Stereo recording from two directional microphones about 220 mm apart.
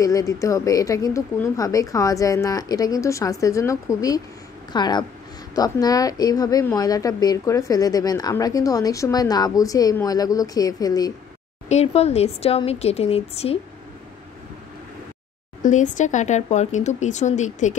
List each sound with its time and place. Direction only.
0.0 s a woman's voice: 15° left (ahead or behind)
11.7 s a woman's voice: 30° left (ahead or behind)
15.6 s speech: 35° left (ahead or behind)